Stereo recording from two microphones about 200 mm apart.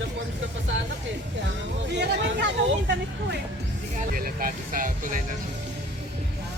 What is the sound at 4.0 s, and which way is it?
Speech, 45° right (ahead or behind).